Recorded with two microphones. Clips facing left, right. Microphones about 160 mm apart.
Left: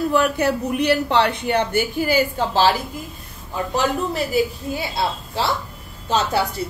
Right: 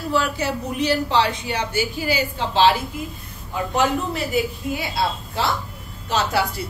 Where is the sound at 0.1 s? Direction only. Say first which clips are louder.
Left 4 dB; 55° left (ahead or behind).